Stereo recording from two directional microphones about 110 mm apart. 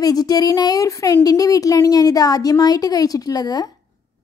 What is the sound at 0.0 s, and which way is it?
A woman's voice, 35° left (ahead or behind).